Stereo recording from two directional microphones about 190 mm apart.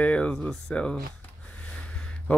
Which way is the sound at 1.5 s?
5° left (ahead or behind).